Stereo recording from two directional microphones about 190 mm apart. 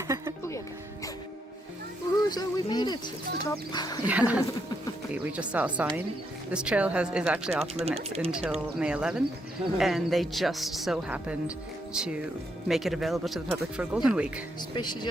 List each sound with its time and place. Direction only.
2.3 s speech: 20° left (ahead or behind)
4.0 s speech: 5° right (ahead or behind)
7.6 s speech: 30° right (ahead or behind)
8.3 s speech: 5° right (ahead or behind)
14.8 s speech: 25° left (ahead or behind)